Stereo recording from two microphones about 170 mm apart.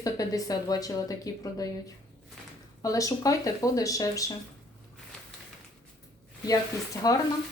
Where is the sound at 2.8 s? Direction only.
20° left (ahead or behind).